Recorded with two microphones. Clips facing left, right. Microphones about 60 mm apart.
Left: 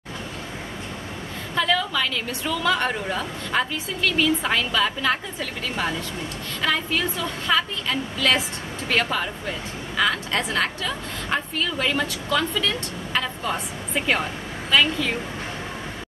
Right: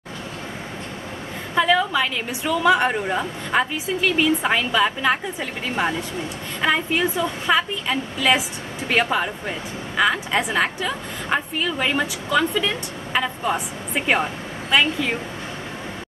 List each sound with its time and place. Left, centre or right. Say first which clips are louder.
1.5 s a woman's voice: right 4 dB; centre